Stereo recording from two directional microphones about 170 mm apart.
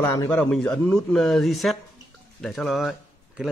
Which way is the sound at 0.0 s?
20° left (ahead or behind).